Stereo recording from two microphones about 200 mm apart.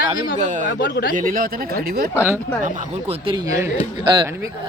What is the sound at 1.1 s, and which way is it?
Speech, 45° right (ahead or behind).